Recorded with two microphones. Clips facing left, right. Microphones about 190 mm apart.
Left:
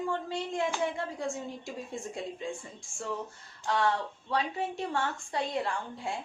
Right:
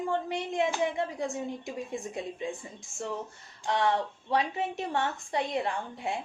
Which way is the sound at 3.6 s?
20° right (ahead or behind).